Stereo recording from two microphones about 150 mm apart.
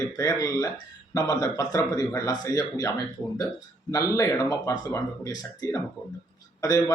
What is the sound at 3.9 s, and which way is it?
Speech, 20° left (ahead or behind).